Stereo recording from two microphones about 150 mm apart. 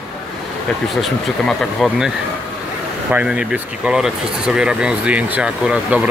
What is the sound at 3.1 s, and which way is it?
Speech, 5° right (ahead or behind).